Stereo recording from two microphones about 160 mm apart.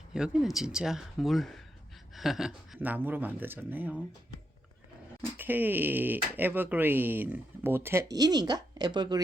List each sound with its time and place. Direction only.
0.1 s speech: 5° right (ahead or behind)
5.2 s speech: 10° right (ahead or behind); by 9.2 s 25° right (ahead or behind)